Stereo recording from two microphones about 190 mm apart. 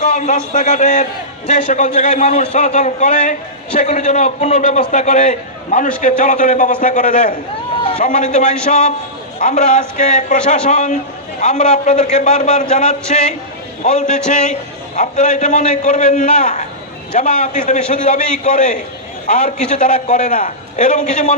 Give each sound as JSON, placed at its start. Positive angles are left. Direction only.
{"t": 0.3, "sound": "a man's voice", "side_deg": 40}